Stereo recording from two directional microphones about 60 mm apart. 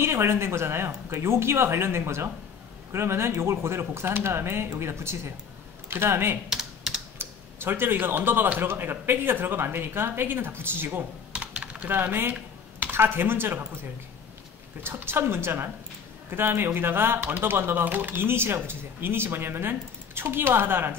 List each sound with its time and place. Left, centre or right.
0.0 s speech: right
6.5 s typing: centre
7.2 s speech: right
11.3 s typing: centre
11.9 s speech: right
15.0 s speech: right